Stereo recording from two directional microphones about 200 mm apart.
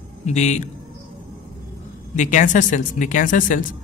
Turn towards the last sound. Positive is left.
turn(degrees=40)  # may be behind; listen again after turning